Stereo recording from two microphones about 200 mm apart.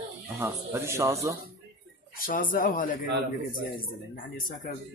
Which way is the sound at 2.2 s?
45° left (ahead or behind).